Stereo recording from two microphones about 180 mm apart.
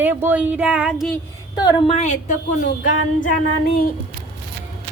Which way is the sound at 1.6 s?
25° left (ahead or behind).